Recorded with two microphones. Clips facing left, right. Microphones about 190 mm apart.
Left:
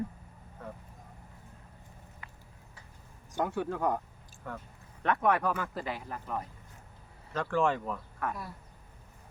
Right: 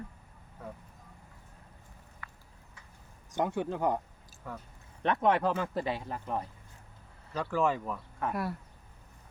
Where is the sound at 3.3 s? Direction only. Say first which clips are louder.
Right 1 dB; 20° right (ahead or behind).